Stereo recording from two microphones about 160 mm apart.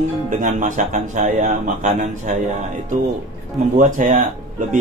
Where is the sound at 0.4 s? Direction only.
50° right (ahead or behind).